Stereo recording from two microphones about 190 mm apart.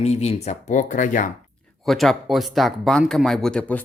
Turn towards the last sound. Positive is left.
turn(degrees=5)  # may be behind; listen again after turning